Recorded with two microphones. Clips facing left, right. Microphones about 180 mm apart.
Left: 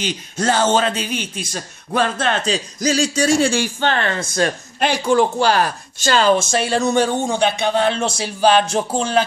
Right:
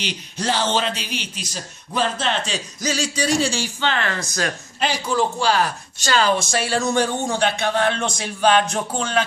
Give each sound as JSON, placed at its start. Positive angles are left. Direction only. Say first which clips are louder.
{"t": 0.0, "sound": "speech", "louder": "left 5 dB", "side_deg": 45}
{"t": 4.0, "sound": "a man's voice", "louder": "left 5 dB", "side_deg": 25}
{"t": 4.7, "sound": "speech", "louder": "left 6 dB", "side_deg": 55}
{"t": 6.1, "sound": "a man's voice", "louder": "left 4 dB", "side_deg": 25}